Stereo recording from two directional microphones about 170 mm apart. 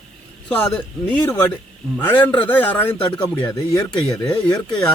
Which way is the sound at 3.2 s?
25° left (ahead or behind).